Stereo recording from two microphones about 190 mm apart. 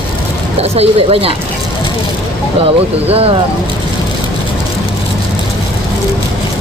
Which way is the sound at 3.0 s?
30° right (ahead or behind).